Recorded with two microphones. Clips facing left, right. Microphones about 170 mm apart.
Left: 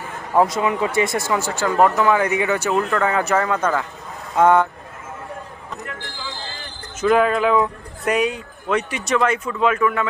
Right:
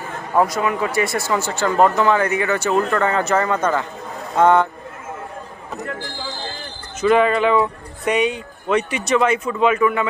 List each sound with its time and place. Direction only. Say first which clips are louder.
0.4 s a man's voice: left 1 dB; 20° left (ahead or behind)
7.0 s speech: right 1 dB; centre (ahead or behind)